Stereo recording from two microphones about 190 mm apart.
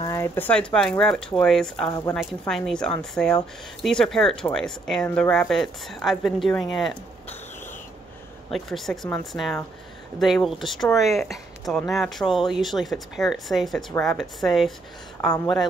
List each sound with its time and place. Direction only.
0.0 s speech: 15° left (ahead or behind)
1.9 s a woman's voice: 20° left (ahead or behind)
2.1 s speech: centre (ahead or behind)
8.5 s speech: centre (ahead or behind)